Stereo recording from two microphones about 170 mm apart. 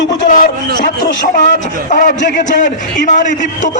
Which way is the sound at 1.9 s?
50° left (ahead or behind).